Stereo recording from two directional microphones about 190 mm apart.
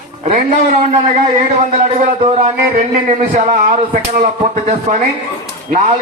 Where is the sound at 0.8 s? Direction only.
35° right (ahead or behind).